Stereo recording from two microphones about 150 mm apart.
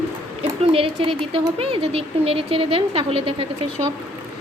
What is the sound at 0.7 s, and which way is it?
Speech, 40° right (ahead or behind).